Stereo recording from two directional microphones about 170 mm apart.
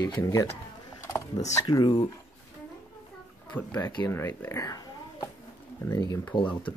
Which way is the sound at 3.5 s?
10° left (ahead or behind).